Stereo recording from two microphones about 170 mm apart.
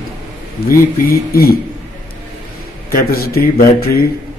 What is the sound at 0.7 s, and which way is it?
Speech, 60° left (ahead or behind).